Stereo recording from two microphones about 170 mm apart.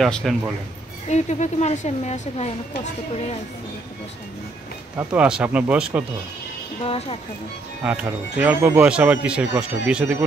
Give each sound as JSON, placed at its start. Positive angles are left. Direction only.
{"t": 0.0, "sound": "a man's voice", "side_deg": 0}
{"t": 1.0, "sound": "a woman's voice", "side_deg": 40}
{"t": 4.9, "sound": "speech", "side_deg": -10}
{"t": 6.8, "sound": "a woman's voice", "side_deg": 35}
{"t": 7.8, "sound": "speech", "side_deg": -10}